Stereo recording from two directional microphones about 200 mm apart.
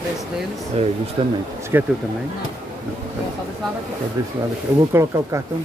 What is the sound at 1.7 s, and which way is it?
Speech, 15° right (ahead or behind).